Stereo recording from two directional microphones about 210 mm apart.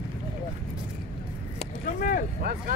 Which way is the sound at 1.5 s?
40° left (ahead or behind).